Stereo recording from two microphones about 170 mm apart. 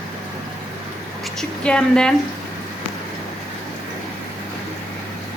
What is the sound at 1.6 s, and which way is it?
Speech, 5° left (ahead or behind).